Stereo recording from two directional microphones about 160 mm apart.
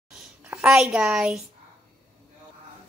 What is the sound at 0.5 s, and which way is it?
Speech, 5° right (ahead or behind).